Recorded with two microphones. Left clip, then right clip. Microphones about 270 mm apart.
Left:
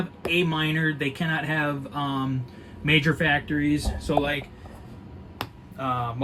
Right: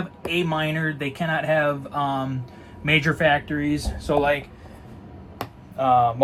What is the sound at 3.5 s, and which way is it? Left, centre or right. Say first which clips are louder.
Speech: even; right.